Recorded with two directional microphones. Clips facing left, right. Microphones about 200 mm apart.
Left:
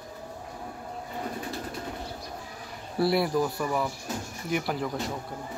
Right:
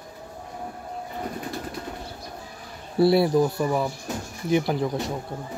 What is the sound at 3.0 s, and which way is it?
A man's voice, 25° right (ahead or behind).